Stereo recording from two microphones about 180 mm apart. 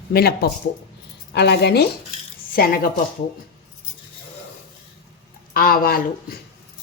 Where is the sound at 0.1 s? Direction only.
60° left (ahead or behind).